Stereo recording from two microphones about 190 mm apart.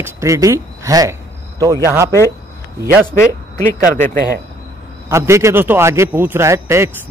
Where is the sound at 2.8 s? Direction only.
10° right (ahead or behind).